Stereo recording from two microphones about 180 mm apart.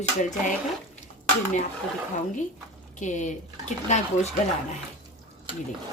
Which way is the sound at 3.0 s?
45° left (ahead or behind).